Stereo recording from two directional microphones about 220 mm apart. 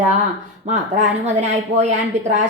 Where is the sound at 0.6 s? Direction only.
30° right (ahead or behind).